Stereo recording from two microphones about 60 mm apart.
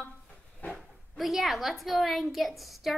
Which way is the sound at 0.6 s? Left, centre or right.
Left.